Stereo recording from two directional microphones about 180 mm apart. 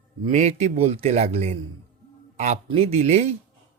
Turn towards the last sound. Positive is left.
turn(degrees=-35)  # may be behind; listen again after turning